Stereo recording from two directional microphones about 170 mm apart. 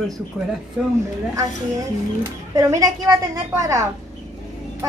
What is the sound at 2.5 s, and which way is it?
A woman's voice, 20° right (ahead or behind).